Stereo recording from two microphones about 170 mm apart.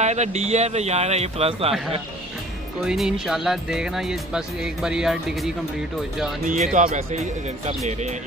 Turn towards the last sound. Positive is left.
turn(degrees=-40)  # may be behind; listen again after turning